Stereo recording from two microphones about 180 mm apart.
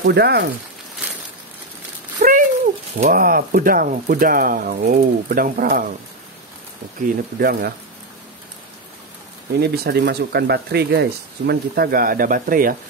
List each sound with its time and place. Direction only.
0.0 s speech: 65° right (ahead or behind)
2.2 s a sound: 50° right (ahead or behind)
3.0 s speech: 50° right (ahead or behind)
7.3 s speech: 60° right (ahead or behind)
9.5 s speech: 65° right (ahead or behind)